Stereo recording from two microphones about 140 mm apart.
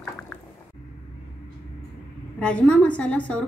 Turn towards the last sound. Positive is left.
turn(degrees=10)  # may be behind; listen again after turning